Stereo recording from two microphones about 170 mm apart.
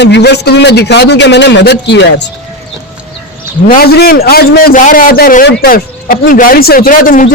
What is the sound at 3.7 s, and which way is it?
A man's voice, 65° left (ahead or behind).